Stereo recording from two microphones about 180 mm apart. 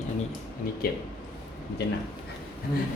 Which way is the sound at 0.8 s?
60° left (ahead or behind).